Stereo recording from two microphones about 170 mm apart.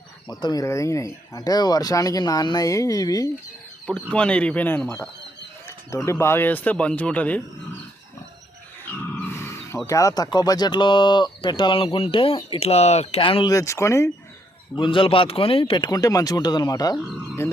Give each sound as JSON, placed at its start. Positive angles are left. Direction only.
{"t": 0.3, "sound": "speech", "side_deg": 25}
{"t": 4.1, "sound": "speech", "side_deg": 5}
{"t": 9.0, "sound": "speech", "side_deg": 10}
{"t": 13.5, "sound": "speech", "side_deg": 20}
{"t": 14.8, "sound": "speech", "side_deg": 30}